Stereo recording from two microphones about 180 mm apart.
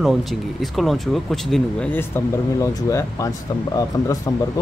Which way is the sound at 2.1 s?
15° left (ahead or behind).